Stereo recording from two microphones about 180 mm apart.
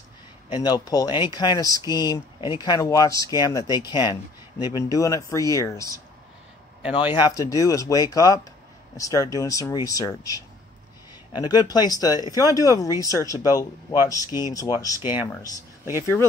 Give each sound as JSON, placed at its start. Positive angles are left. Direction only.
{"t": 0.5, "sound": "speech", "side_deg": 20}
{"t": 7.2, "sound": "speech", "side_deg": 20}
{"t": 15.0, "sound": "speech", "side_deg": -10}